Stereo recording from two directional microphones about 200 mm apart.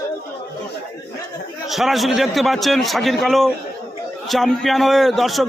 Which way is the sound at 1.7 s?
Centre (ahead or behind).